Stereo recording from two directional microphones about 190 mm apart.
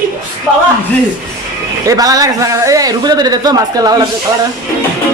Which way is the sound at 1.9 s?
20° right (ahead or behind).